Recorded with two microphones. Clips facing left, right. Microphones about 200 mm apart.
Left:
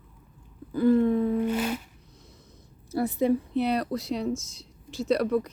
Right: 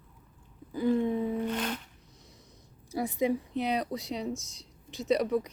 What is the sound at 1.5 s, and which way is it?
Music, 10° left (ahead or behind).